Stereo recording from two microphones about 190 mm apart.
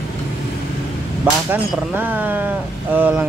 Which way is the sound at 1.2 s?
10° right (ahead or behind).